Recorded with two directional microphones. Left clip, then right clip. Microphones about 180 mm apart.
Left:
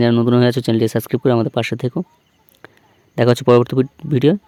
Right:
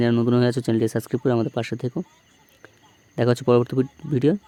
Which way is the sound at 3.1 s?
30° left (ahead or behind).